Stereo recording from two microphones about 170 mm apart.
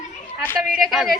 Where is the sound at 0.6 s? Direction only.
Centre (ahead or behind).